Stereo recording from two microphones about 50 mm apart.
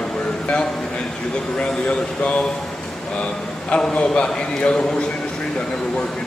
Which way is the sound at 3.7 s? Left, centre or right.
Left.